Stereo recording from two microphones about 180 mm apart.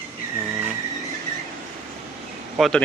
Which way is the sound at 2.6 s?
5° left (ahead or behind).